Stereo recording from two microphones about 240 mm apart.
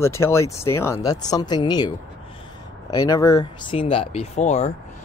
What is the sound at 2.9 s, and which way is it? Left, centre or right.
Speech, centre.